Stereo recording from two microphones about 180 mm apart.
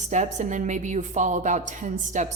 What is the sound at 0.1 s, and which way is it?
A woman's voice, 40° right (ahead or behind).